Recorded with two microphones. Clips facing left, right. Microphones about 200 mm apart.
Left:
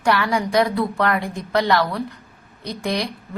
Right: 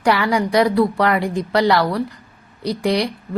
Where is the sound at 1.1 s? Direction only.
80° right.